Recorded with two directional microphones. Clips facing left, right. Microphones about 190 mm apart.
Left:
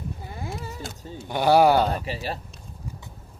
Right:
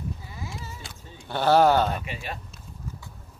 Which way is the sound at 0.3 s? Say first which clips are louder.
Left 4 dB; 55° left (ahead or behind).